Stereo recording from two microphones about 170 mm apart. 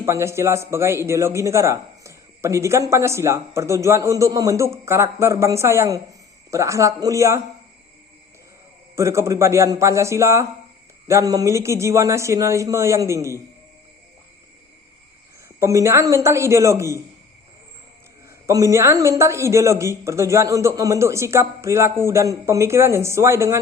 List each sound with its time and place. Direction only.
0.0 s a man's voice: 15° right (ahead or behind)
9.0 s a man's voice: 15° right (ahead or behind)
15.4 s a man's voice: 15° right (ahead or behind)
18.4 s a man's voice: 15° right (ahead or behind)